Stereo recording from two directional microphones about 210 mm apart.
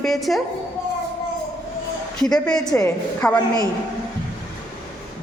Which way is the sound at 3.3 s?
20° left (ahead or behind).